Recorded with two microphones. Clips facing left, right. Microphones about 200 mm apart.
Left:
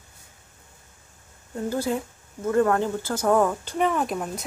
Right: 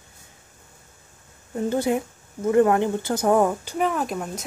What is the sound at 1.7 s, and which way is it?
Speech, 20° right (ahead or behind).